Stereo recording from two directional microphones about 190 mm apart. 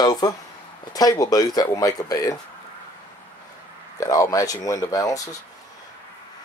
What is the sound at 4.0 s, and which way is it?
Speech, 15° left (ahead or behind).